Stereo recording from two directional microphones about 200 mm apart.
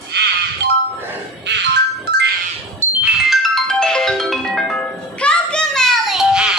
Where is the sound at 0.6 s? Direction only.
60° right (ahead or behind).